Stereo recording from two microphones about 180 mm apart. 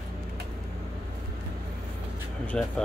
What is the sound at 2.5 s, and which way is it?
Speech, 5° left (ahead or behind).